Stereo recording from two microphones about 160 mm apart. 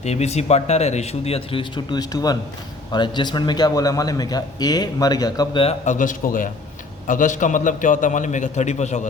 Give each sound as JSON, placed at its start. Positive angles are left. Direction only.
{"t": 0.0, "sound": "a man's voice", "side_deg": 45}
{"t": 5.6, "sound": "a man's voice", "side_deg": 50}